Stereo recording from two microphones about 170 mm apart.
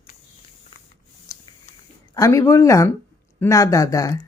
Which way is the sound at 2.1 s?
20° left (ahead or behind).